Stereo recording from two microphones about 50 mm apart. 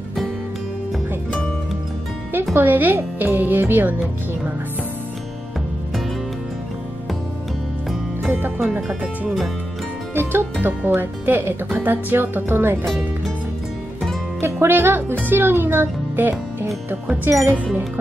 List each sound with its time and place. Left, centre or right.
2.5 s speech: right
8.3 s speech: right
8.6 s speech: right
10.1 s a child's voice: right
14.4 s a child's voice: right
17.3 s speech: right